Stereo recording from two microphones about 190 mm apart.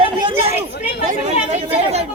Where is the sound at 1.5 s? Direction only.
35° right (ahead or behind).